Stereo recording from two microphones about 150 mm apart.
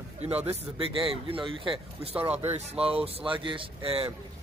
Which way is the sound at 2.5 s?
40° right (ahead or behind).